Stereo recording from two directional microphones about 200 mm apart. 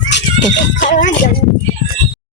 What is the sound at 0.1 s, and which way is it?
Music, 60° left (ahead or behind).